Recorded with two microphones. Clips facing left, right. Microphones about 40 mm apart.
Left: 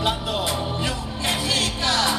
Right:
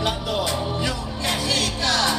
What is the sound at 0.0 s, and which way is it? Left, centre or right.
Music, centre.